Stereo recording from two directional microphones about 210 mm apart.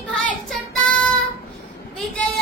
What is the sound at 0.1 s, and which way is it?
Child singing, 5° left (ahead or behind).